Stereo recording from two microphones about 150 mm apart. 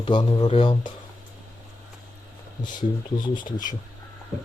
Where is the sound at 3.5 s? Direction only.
60° left (ahead or behind).